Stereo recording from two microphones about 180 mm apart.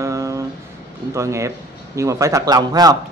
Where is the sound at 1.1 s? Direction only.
15° right (ahead or behind).